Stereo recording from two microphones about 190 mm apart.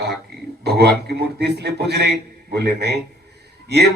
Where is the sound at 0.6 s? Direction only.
60° right (ahead or behind).